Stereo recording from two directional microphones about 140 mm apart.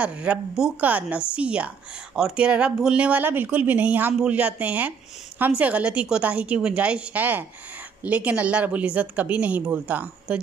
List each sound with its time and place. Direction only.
0.0 s speech: 10° right (ahead or behind)